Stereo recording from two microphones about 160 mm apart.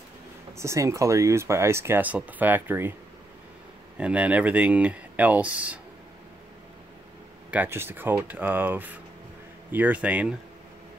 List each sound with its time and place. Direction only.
0.6 s speech: 20° right (ahead or behind)
4.0 s speech: 10° right (ahead or behind)
7.5 s speech: 15° right (ahead or behind)